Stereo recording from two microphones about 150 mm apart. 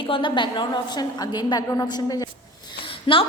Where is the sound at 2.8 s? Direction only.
35° left (ahead or behind).